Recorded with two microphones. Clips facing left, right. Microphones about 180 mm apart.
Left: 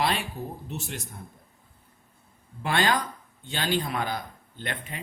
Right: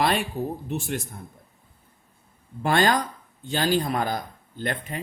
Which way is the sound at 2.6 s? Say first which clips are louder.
Right 4 dB; 45° right (ahead or behind).